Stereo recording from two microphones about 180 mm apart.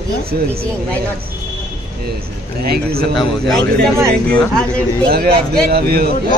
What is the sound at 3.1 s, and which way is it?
Speech, centre (ahead or behind).